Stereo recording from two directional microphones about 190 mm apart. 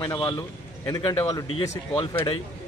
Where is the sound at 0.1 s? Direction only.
10° left (ahead or behind).